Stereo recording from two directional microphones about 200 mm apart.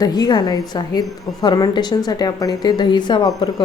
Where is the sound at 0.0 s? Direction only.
20° left (ahead or behind).